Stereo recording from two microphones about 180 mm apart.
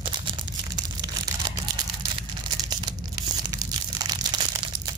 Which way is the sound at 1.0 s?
25° right (ahead or behind).